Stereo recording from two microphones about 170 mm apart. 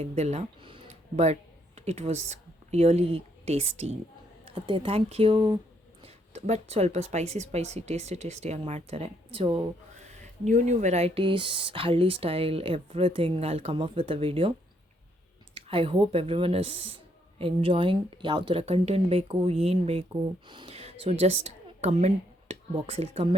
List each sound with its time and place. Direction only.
0.0 s speech: 40° right (ahead or behind)
6.0 s speech: 40° right (ahead or behind)
15.5 s a woman's voice: 35° right (ahead or behind)